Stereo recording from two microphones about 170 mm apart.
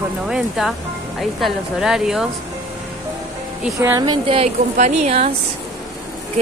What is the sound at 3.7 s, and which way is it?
Speech, 20° right (ahead or behind).